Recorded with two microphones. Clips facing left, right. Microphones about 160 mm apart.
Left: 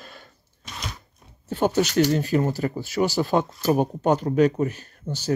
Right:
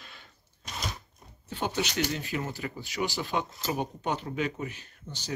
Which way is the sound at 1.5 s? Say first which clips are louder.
Left 10 dB; 45° left (ahead or behind).